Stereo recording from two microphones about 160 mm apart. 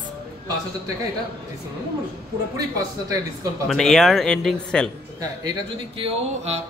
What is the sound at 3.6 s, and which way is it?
Speech, centre (ahead or behind).